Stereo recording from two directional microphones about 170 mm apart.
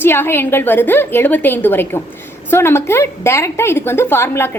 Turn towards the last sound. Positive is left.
turn(degrees=15)  # may be behind; listen again after turning